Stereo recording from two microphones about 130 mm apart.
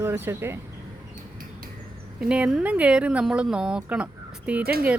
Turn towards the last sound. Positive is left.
turn(degrees=-10)  # may be behind; listen again after turning